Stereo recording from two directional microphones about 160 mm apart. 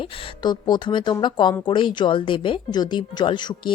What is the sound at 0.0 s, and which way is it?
A woman's voice, 25° left (ahead or behind).